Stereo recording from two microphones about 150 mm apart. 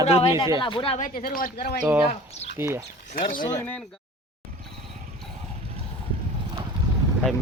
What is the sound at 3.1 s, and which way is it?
Speech, 65° left (ahead or behind).